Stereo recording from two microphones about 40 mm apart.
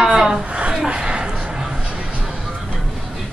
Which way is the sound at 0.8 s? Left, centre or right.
Right.